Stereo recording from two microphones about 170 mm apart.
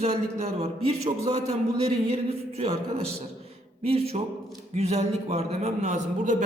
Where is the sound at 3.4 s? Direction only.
35° right (ahead or behind).